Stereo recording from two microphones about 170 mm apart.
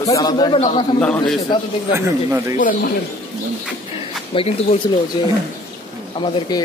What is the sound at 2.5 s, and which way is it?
Speech, 55° left (ahead or behind).